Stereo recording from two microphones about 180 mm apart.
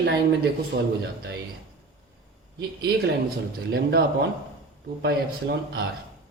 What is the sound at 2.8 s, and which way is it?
Speech, 60° right (ahead or behind).